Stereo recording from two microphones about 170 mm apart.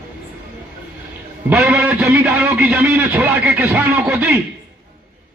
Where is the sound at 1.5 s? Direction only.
10° right (ahead or behind).